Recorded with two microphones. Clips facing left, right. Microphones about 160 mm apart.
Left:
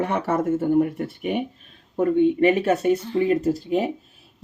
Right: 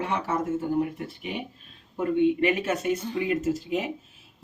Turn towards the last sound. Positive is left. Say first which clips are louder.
# left 5 dB
turn(degrees=35)  # may be behind; listen again after turning